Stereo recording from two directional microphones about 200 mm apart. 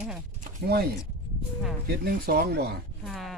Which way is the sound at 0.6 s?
55° right (ahead or behind).